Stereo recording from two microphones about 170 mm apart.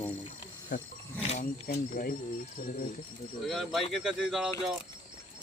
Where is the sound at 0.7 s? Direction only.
55° left (ahead or behind).